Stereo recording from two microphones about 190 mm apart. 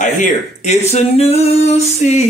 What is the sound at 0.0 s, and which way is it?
Speech, 40° left (ahead or behind).